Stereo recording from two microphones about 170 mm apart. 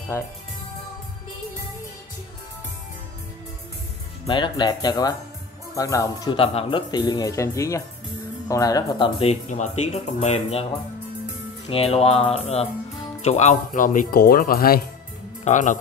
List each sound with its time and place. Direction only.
4.3 s speech: 25° left (ahead or behind)
6.4 s speech: 30° left (ahead or behind)
11.7 s speech: 35° left (ahead or behind); by 14.8 s 60° left (ahead or behind)
15.4 s speech: 45° left (ahead or behind)